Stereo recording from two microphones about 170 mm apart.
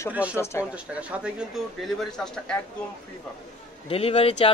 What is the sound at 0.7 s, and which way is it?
Speech, 10° right (ahead or behind).